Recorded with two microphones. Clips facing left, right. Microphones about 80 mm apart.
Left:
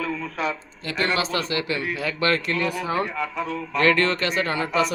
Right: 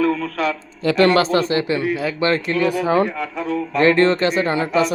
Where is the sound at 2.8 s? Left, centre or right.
Right.